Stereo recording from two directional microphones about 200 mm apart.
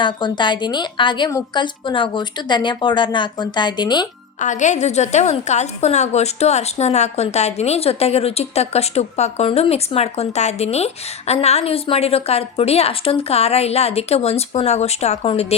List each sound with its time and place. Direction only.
0.0 s a woman's voice: 25° left (ahead or behind)
4.4 s a woman's voice: 35° left (ahead or behind)